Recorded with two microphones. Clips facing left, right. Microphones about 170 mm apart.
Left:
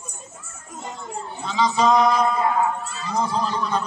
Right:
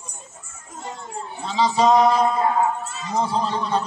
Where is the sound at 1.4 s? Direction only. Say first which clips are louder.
Right 1 dB; 30° right (ahead or behind).